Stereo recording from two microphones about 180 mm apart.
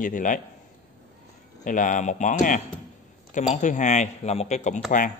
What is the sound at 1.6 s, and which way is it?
A man's voice, 45° left (ahead or behind).